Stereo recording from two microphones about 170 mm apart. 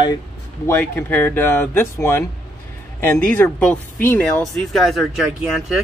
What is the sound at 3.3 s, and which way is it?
Speech, 10° left (ahead or behind).